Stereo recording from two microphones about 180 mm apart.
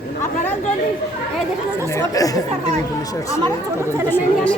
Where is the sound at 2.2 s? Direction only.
20° left (ahead or behind).